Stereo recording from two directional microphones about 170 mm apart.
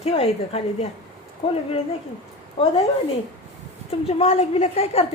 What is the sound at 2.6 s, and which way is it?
Speech, 30° left (ahead or behind).